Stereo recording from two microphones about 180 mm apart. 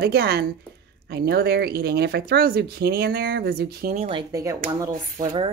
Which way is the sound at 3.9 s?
30° right (ahead or behind).